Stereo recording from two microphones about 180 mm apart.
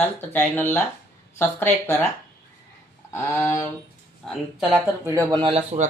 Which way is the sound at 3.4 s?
15° left (ahead or behind).